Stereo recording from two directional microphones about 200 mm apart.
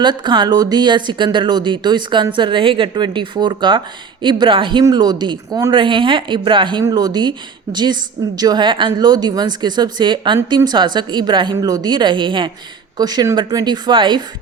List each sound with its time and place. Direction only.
0.0 s speech: 20° right (ahead or behind)